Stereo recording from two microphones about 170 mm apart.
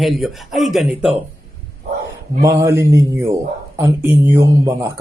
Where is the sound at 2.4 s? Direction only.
20° right (ahead or behind).